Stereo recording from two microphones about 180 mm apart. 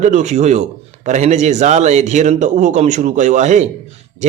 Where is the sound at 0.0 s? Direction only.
40° right (ahead or behind).